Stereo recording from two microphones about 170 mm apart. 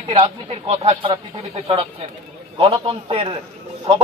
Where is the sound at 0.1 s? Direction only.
35° right (ahead or behind).